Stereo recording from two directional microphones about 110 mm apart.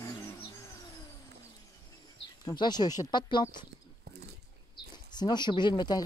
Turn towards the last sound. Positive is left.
turn(degrees=40)  # may be behind; listen again after turning